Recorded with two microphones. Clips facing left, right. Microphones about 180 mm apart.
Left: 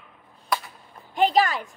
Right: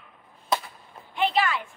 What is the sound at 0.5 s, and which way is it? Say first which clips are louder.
Whip: right 1 dB; 25° right (ahead or behind).